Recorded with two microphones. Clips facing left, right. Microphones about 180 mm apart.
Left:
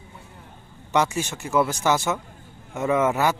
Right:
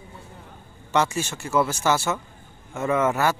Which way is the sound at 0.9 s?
15° left (ahead or behind).